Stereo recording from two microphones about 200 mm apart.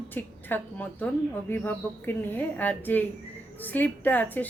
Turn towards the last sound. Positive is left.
turn(degrees=10)  # may be behind; listen again after turning